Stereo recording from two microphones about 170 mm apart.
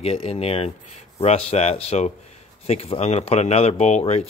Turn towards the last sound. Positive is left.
turn(degrees=40)  # may be behind; listen again after turning